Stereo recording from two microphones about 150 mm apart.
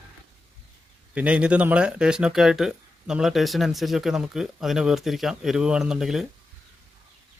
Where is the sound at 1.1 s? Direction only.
10° right (ahead or behind).